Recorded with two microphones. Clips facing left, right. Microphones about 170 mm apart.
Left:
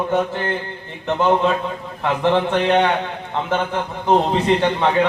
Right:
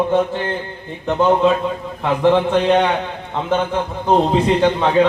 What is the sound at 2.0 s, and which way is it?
A man's voice, 15° right (ahead or behind).